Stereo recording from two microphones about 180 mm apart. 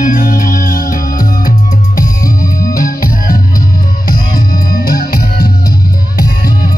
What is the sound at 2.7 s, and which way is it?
Music, 50° left (ahead or behind).